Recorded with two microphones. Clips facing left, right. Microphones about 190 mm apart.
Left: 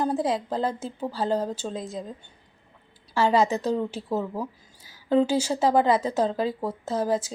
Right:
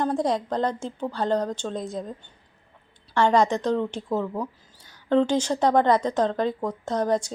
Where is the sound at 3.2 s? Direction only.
5° left (ahead or behind).